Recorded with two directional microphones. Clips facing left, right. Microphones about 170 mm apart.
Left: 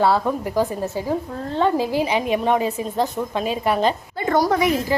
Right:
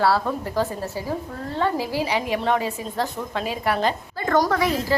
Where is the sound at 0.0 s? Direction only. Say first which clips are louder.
Left 2 dB; 15° left (ahead or behind).